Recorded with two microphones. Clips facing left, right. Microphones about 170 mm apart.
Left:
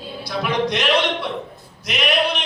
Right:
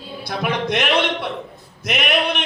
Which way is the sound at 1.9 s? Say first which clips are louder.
Even; 55° right (ahead or behind).